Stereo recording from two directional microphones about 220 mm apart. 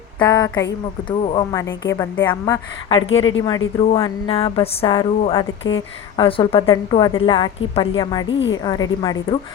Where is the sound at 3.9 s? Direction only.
20° left (ahead or behind).